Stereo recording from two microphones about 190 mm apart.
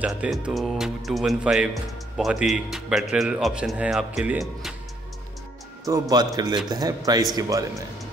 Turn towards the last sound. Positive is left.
turn(degrees=-20)  # may be behind; listen again after turning